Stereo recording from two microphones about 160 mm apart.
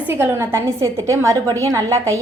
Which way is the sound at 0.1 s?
15° right (ahead or behind).